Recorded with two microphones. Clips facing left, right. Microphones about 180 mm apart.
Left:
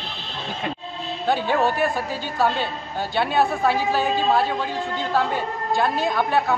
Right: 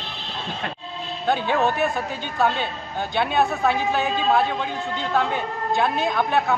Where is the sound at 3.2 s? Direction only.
5° left (ahead or behind).